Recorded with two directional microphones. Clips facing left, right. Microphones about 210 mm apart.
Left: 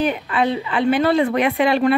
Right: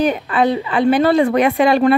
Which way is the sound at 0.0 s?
40° right (ahead or behind).